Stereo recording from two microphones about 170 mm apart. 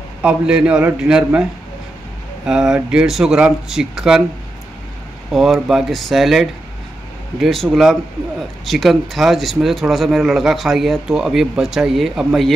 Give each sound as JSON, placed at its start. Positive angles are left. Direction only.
{"t": 0.2, "sound": "a man's voice", "side_deg": -5}
{"t": 5.3, "sound": "speech", "side_deg": 0}